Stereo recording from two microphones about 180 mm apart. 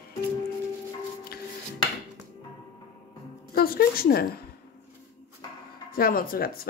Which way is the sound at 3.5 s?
55° left (ahead or behind).